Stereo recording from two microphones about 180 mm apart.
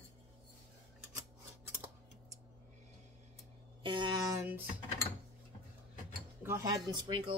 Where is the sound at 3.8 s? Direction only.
25° right (ahead or behind).